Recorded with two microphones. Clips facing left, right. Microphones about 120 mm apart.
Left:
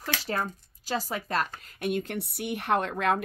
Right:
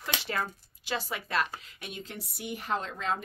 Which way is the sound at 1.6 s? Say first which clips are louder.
Left 13 dB; 50° left (ahead or behind).